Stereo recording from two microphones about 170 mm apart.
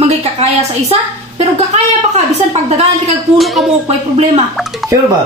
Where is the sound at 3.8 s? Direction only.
40° right (ahead or behind).